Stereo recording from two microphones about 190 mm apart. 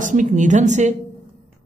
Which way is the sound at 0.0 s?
40° right (ahead or behind).